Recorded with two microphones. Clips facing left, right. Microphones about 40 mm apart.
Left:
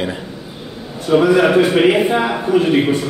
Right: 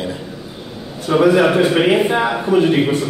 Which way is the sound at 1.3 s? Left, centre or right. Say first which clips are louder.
Left 1 dB; centre.